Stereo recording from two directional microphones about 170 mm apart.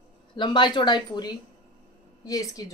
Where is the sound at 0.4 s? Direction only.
25° left (ahead or behind).